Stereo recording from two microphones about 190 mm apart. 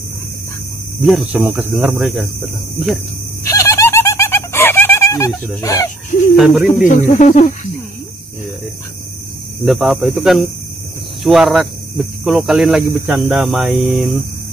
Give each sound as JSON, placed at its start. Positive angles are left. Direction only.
{"t": 1.0, "sound": "speech", "side_deg": -5}
{"t": 3.4, "sound": "a sound", "side_deg": 15}
{"t": 5.6, "sound": "speech", "side_deg": 15}
{"t": 6.3, "sound": "speech", "side_deg": 0}
{"t": 7.0, "sound": "speech", "side_deg": 40}
{"t": 9.7, "sound": "speech", "side_deg": 0}